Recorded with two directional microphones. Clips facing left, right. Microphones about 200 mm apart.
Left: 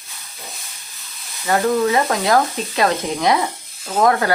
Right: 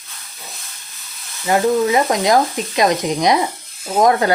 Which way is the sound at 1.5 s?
15° right (ahead or behind).